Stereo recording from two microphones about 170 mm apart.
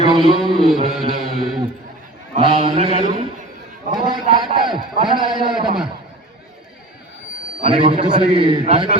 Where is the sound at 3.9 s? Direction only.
25° right (ahead or behind).